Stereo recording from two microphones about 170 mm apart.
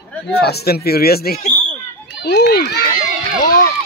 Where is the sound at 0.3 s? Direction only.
70° left (ahead or behind).